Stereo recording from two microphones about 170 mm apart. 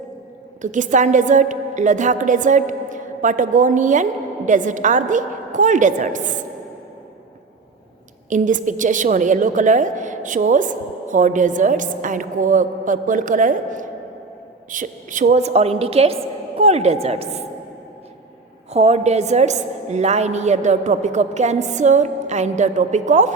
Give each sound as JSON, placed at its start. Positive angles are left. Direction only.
{"t": 0.6, "sound": "a woman's voice", "side_deg": -45}
{"t": 8.3, "sound": "a woman's voice", "side_deg": -50}
{"t": 18.7, "sound": "a woman's voice", "side_deg": -40}